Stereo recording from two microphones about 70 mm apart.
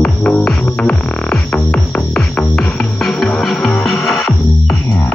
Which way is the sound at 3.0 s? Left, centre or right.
Centre.